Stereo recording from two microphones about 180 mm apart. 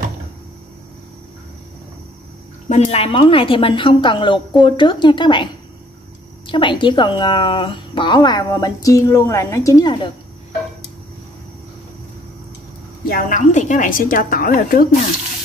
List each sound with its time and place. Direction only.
2.7 s a woman's voice: 35° left (ahead or behind); by 9.9 s 20° left (ahead or behind)
13.0 s a woman's voice: 50° left (ahead or behind)